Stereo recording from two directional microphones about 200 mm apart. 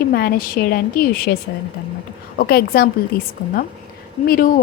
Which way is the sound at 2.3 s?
50° left (ahead or behind).